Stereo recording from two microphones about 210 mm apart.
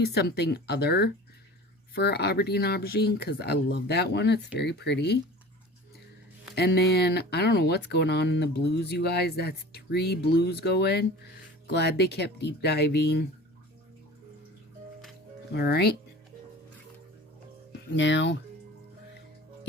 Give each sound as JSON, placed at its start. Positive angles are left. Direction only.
{"t": 0.0, "sound": "speech", "side_deg": 50}
{"t": 6.6, "sound": "speech", "side_deg": 50}
{"t": 15.5, "sound": "speech", "side_deg": 50}
{"t": 17.7, "sound": "speech", "side_deg": 60}